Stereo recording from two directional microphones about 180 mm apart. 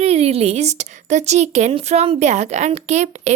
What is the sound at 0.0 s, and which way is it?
A woman's voice, 35° right (ahead or behind).